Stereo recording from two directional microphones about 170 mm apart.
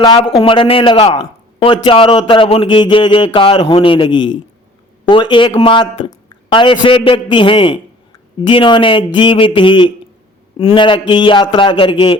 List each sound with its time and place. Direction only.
0.3 s a man's voice: 30° left (ahead or behind)